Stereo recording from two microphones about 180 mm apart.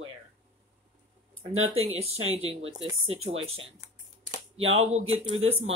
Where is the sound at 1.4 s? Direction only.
35° right (ahead or behind).